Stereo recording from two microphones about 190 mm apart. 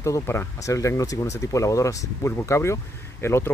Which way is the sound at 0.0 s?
15° left (ahead or behind).